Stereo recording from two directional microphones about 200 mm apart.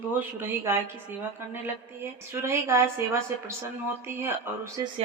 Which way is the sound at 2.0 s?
15° right (ahead or behind).